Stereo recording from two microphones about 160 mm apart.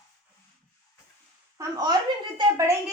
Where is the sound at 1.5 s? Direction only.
25° right (ahead or behind).